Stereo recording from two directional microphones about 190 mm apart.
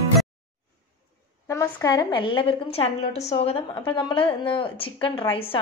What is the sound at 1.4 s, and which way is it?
A woman's voice, 15° left (ahead or behind).